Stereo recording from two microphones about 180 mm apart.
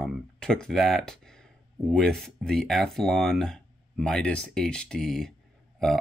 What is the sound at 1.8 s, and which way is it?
Speech, centre (ahead or behind).